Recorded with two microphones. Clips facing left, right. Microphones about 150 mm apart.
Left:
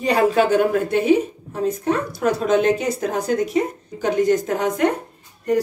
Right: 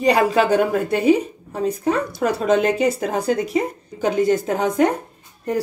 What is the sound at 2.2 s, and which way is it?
Speech, 35° right (ahead or behind).